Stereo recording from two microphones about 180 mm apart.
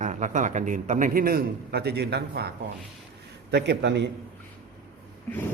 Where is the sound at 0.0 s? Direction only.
45° right (ahead or behind); by 2.5 s 65° right (ahead or behind).